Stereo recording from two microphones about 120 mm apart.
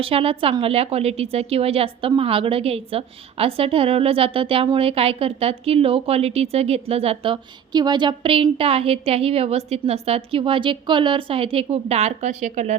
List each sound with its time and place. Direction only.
0.0 s a woman's voice: 50° right (ahead or behind); by 12.7 s 80° right